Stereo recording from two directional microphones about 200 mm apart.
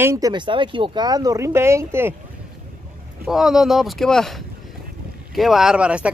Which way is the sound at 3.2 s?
Centre (ahead or behind).